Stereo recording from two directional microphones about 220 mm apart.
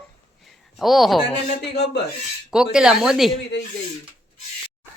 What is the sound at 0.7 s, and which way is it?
Speech, centre (ahead or behind).